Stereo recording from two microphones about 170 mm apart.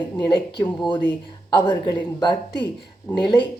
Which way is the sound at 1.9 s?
25° left (ahead or behind).